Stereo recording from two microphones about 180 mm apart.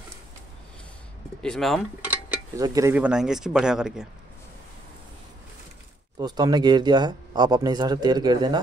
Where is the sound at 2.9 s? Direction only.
5° right (ahead or behind).